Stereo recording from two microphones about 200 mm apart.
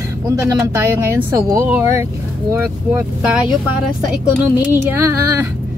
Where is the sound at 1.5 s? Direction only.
10° right (ahead or behind).